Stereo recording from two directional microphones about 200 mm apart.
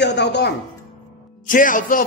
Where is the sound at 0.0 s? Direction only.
60° left (ahead or behind).